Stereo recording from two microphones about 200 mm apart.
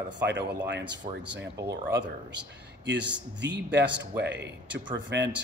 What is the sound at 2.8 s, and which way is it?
A man's voice, 60° right (ahead or behind).